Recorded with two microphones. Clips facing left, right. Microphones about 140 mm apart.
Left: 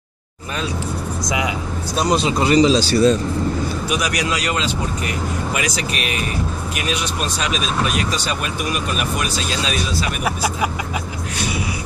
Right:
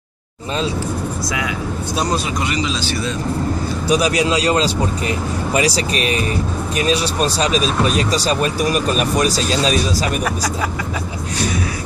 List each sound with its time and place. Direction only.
2.0 s speech: 25° left (ahead or behind)
3.9 s speech: 30° right (ahead or behind)